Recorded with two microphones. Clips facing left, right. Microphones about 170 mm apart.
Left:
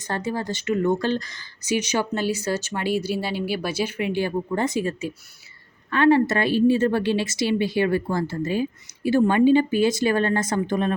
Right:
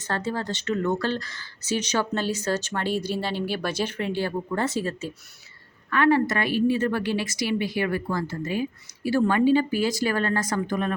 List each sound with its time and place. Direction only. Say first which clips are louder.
0.0 s speech: left 1 dB; 15° left (ahead or behind)
5.9 s a woman's voice: left 3 dB; 25° left (ahead or behind)